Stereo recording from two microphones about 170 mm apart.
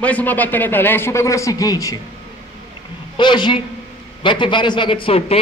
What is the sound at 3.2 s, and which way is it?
A man's voice, 25° left (ahead or behind).